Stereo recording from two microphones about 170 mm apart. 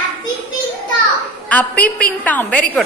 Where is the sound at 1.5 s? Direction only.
10° left (ahead or behind).